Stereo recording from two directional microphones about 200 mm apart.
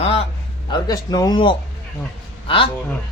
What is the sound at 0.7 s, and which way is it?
Speech, 20° left (ahead or behind).